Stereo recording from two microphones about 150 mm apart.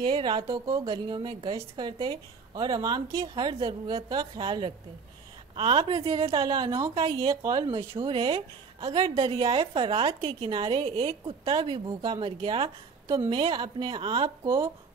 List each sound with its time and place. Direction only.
0.0 s a woman's voice: 35° right (ahead or behind)
6.4 s a woman's voice: 25° right (ahead or behind)
13.1 s a woman's voice: 30° right (ahead or behind)